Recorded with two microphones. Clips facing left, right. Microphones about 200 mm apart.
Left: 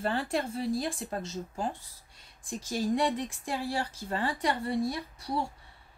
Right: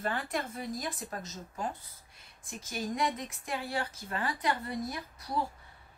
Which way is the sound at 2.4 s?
30° left (ahead or behind).